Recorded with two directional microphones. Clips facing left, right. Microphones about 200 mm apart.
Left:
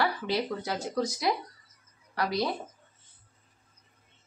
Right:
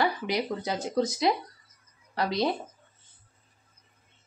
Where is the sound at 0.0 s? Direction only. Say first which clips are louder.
Right 1 dB; 15° right (ahead or behind).